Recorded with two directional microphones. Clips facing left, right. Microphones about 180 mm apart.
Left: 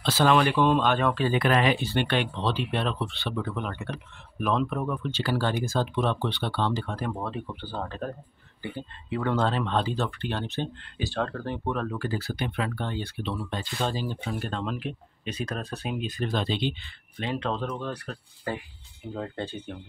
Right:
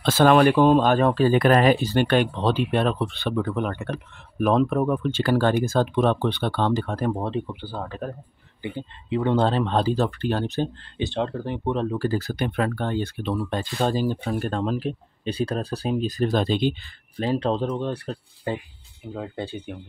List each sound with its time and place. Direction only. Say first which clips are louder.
0.0 s speech: right 6 dB; 50° right (ahead or behind)
7.2 s speech: right 6 dB; 25° right (ahead or behind)
7.4 s speech: right 2 dB; 10° right (ahead or behind)
8.6 s speech: right 4 dB; 20° right (ahead or behind); by 10.7 s 40° right (ahead or behind)
11.0 s speech: right 4 dB; 20° right (ahead or behind)
12.1 s speech: right 5 dB; 40° right (ahead or behind); by 18.6 s 25° right (ahead or behind)
19.1 s speech: right 2 dB; 10° right (ahead or behind)